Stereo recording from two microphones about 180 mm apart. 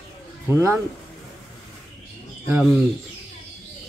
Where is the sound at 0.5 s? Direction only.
15° right (ahead or behind).